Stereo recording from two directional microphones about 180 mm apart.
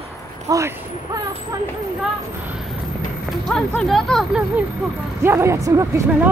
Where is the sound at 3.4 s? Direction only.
5° left (ahead or behind).